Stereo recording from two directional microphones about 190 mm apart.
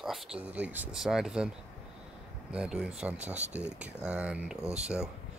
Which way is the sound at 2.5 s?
5° right (ahead or behind).